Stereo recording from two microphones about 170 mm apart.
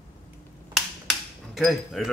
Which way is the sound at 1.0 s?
Centre (ahead or behind).